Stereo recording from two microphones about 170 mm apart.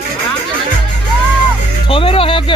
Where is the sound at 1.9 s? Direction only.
35° left (ahead or behind).